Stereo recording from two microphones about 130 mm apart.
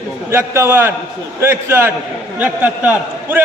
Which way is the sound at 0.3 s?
20° right (ahead or behind).